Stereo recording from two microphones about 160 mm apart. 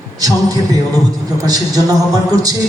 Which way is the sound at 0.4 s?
20° right (ahead or behind).